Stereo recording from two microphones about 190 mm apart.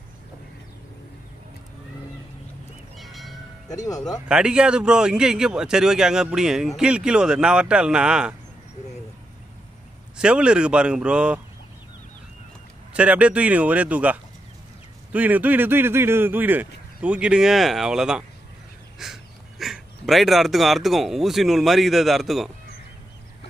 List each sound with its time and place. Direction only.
3.0 s a sound: centre (ahead or behind)
3.6 s speech: 20° left (ahead or behind)
4.3 s speech: 5° right (ahead or behind)
10.1 s speech: 5° right (ahead or behind)
12.9 s speech: 5° right (ahead or behind)